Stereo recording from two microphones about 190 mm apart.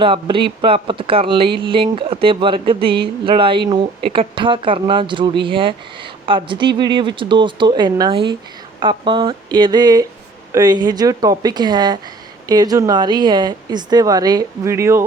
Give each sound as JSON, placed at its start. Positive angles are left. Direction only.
{"t": 0.0, "sound": "speech", "side_deg": -25}